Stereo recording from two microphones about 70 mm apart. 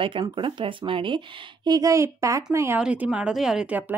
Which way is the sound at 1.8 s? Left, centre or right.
Right.